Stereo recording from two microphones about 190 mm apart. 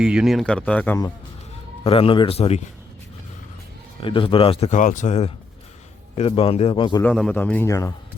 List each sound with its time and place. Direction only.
0.0 s speech: 5° right (ahead or behind); by 1.1 s 15° left (ahead or behind)
1.8 s speech: 30° left (ahead or behind)
4.0 s speech: 25° left (ahead or behind)
7.0 s a man's voice: 5° left (ahead or behind)